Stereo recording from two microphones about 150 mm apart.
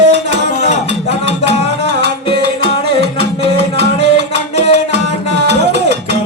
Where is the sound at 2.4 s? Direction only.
90° right.